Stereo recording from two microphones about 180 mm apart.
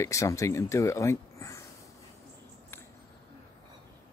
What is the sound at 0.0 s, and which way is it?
Speech, 15° left (ahead or behind).